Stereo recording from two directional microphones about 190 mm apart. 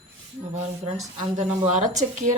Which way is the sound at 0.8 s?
40° right (ahead or behind).